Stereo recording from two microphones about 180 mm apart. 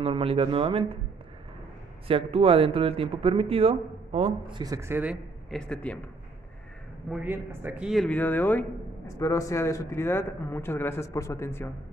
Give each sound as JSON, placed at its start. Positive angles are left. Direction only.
{"t": 0.0, "sound": "speech", "side_deg": -30}
{"t": 2.0, "sound": "speech", "side_deg": -30}
{"t": 7.2, "sound": "speech", "side_deg": -10}